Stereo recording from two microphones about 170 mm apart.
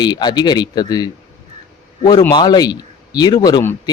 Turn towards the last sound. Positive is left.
turn(degrees=20)  # may be behind; listen again after turning